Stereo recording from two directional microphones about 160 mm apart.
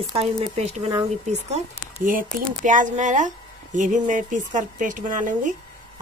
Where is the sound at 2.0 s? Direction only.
60° right (ahead or behind).